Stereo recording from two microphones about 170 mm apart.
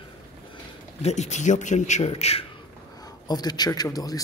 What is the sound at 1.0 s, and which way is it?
A man's voice, 40° left (ahead or behind).